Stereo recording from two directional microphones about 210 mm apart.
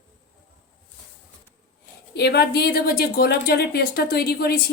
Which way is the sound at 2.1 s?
50° left (ahead or behind).